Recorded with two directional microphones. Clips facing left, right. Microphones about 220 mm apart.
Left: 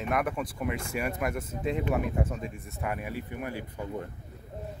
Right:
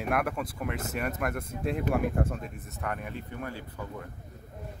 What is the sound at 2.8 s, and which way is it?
Speech, 10° left (ahead or behind).